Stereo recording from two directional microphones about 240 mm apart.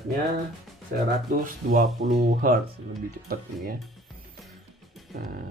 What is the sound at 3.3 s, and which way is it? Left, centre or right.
Speech, right.